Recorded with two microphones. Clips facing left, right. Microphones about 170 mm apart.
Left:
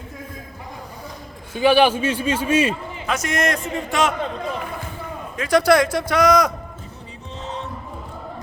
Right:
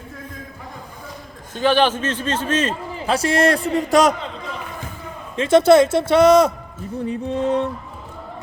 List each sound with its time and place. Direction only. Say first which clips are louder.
1.5 s a man's voice: left 2 dB; 10° left (ahead or behind)
3.1 s a man's voice: right 5 dB; 30° right (ahead or behind)
5.4 s a man's voice: right 4 dB; 25° right (ahead or behind)
7.1 s music: right 13 dB; 55° right (ahead or behind)